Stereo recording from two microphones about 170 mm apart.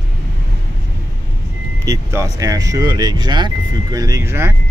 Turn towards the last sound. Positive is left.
turn(degrees=-15)  # may be behind; listen again after turning